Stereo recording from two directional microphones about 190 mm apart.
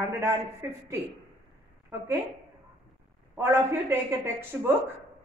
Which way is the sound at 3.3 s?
10° right (ahead or behind).